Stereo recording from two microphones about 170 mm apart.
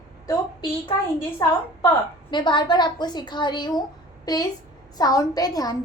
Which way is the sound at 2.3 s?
25° left (ahead or behind).